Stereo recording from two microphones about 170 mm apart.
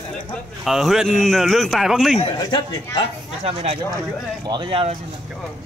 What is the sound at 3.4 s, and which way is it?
Speech, 40° right (ahead or behind).